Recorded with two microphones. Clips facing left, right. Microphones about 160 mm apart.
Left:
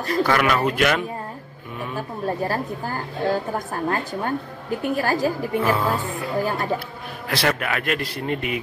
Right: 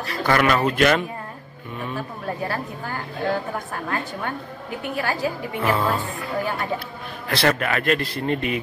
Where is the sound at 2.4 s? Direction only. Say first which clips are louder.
Left 3 dB; 35° left (ahead or behind).